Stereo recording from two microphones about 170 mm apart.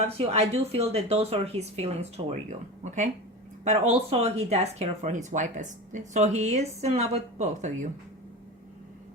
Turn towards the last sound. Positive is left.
turn(degrees=-45)  # may be behind; listen again after turning